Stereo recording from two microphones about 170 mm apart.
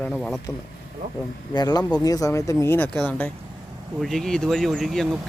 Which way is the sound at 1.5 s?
25° left (ahead or behind).